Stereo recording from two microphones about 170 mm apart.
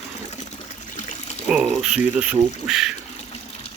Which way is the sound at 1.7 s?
5° right (ahead or behind).